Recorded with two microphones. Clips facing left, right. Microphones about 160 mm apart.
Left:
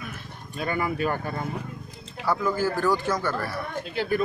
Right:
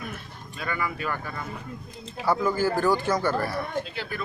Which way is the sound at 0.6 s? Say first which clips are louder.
Left 4 dB; 40° left (ahead or behind).